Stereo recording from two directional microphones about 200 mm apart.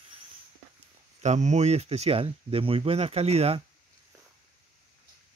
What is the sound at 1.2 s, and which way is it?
Speech, 35° right (ahead or behind).